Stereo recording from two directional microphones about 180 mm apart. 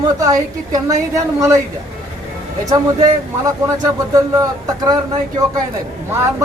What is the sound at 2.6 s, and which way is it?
A woman's voice, 20° right (ahead or behind).